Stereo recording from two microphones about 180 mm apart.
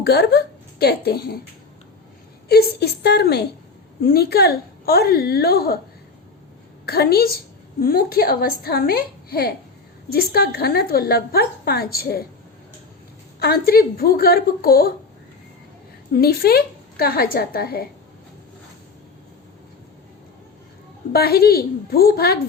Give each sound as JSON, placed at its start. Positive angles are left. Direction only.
{"t": 0.0, "sound": "a woman's voice", "side_deg": 65}
{"t": 2.5, "sound": "a woman's voice", "side_deg": 60}
{"t": 6.8, "sound": "a woman's voice", "side_deg": 60}
{"t": 13.4, "sound": "a woman's voice", "side_deg": 55}
{"t": 16.1, "sound": "a woman's voice", "side_deg": 60}
{"t": 21.1, "sound": "a woman's voice", "side_deg": 60}